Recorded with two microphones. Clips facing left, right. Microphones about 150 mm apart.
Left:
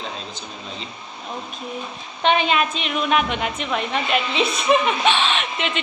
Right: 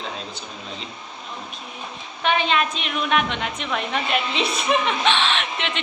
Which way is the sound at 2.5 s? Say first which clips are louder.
Left 2 dB; 5° left (ahead or behind).